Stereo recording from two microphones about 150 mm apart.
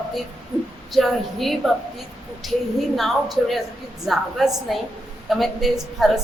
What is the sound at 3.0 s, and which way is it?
A woman's voice, centre (ahead or behind).